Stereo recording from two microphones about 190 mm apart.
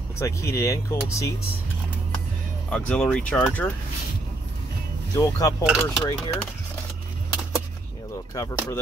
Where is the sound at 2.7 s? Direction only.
5° left (ahead or behind).